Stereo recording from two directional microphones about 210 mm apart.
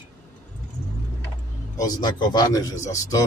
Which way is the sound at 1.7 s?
20° left (ahead or behind).